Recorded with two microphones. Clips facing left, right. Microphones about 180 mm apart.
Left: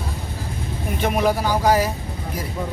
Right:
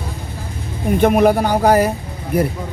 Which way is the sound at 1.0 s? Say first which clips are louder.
Right 7 dB; 55° right (ahead or behind).